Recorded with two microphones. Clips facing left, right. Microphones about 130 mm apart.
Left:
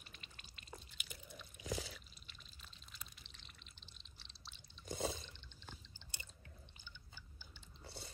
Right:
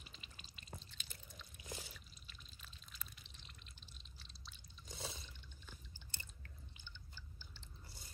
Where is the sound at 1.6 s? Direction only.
90° left.